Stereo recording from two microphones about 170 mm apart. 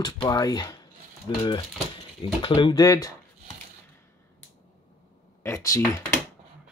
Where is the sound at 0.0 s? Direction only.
25° left (ahead or behind).